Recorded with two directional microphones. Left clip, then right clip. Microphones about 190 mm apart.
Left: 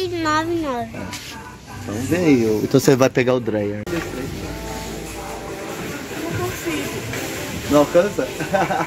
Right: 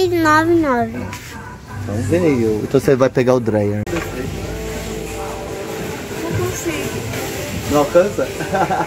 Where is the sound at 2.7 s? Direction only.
55° left (ahead or behind).